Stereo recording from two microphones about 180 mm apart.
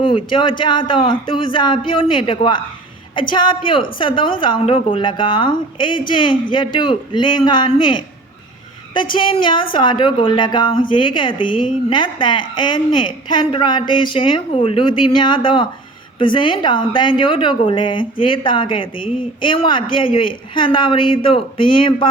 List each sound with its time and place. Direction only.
0.0 s a woman's voice: 30° left (ahead or behind)
9.1 s a woman's voice: 25° left (ahead or behind)